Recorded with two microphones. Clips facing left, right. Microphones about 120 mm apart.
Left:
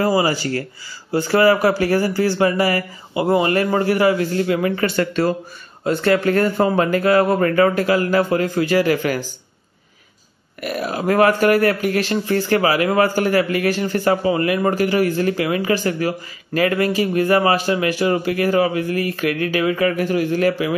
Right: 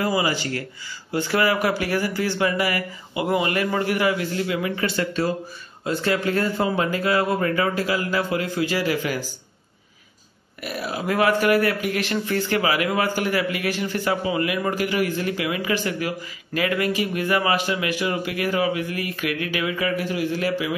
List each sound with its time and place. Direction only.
0.0 s a man's voice: 40° left (ahead or behind); by 9.2 s 55° left (ahead or behind)
10.6 s a man's voice: 50° left (ahead or behind)